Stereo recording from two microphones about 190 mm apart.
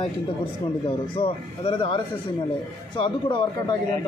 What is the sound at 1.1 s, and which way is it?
Speech, 30° left (ahead or behind).